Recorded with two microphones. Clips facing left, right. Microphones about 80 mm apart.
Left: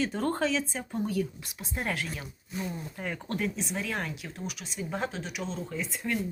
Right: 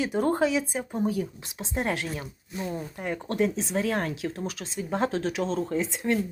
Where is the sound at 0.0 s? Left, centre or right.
Centre.